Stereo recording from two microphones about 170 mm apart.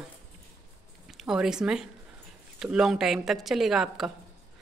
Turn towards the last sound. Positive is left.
turn(degrees=0)  # may be behind; listen again after turning